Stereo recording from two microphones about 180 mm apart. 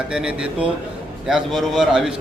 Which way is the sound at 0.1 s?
5° right (ahead or behind).